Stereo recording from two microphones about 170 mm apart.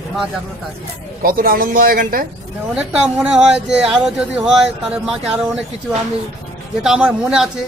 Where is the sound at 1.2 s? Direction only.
60° right (ahead or behind).